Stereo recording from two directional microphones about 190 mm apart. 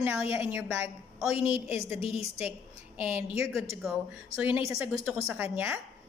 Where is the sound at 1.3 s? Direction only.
30° left (ahead or behind).